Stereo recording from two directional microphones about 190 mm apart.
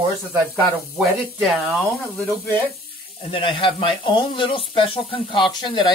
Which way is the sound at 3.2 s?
30° left (ahead or behind).